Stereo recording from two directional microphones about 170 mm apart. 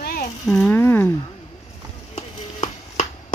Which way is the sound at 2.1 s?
45° left (ahead or behind).